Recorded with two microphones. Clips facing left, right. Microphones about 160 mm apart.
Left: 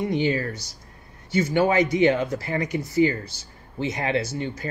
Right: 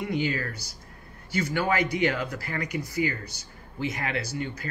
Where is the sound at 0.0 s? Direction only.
25° left (ahead or behind).